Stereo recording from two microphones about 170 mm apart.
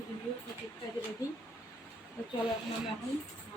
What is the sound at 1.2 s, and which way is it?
Speech, 20° left (ahead or behind).